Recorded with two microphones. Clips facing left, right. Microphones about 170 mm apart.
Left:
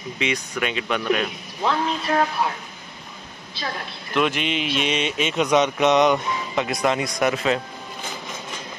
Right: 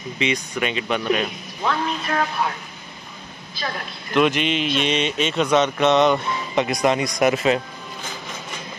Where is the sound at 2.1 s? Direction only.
30° left (ahead or behind).